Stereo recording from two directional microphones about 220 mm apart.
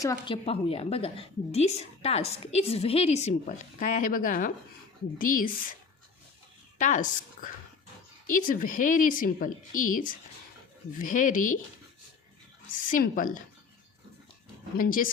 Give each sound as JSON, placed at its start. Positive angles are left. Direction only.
{"t": 0.0, "sound": "speech", "side_deg": 15}
{"t": 0.4, "sound": "a woman's voice", "side_deg": 25}
{"t": 6.7, "sound": "a woman's voice", "side_deg": 35}
{"t": 12.9, "sound": "speech", "side_deg": 40}
{"t": 14.8, "sound": "speech", "side_deg": 40}